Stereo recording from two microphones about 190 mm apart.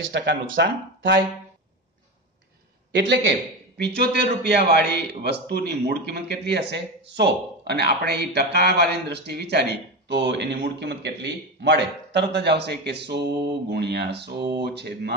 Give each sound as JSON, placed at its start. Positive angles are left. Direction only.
{"t": 0.0, "sound": "speech", "side_deg": -70}
{"t": 2.9, "sound": "speech", "side_deg": -65}